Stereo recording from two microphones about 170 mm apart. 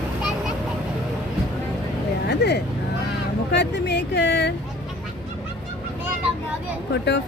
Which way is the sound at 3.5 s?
85° left.